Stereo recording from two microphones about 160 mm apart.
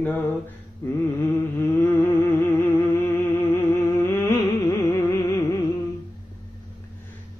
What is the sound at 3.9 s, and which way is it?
Music, 15° left (ahead or behind).